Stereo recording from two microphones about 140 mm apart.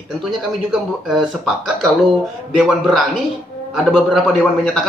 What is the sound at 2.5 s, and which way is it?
A man's voice, centre (ahead or behind).